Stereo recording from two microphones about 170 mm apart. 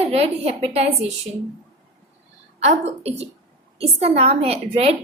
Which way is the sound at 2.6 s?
40° right (ahead or behind).